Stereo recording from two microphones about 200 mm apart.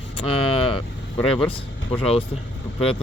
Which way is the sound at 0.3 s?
25° left (ahead or behind).